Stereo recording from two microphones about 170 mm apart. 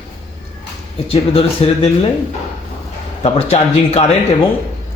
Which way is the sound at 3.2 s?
35° left (ahead or behind).